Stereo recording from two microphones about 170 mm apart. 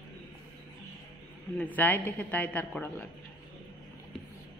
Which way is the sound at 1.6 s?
10° left (ahead or behind).